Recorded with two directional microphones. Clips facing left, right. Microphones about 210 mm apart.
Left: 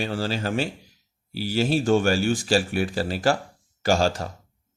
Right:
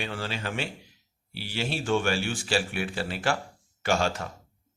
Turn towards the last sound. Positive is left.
turn(degrees=35)  # may be behind; listen again after turning